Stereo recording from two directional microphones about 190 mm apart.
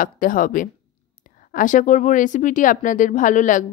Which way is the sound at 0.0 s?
45° left (ahead or behind).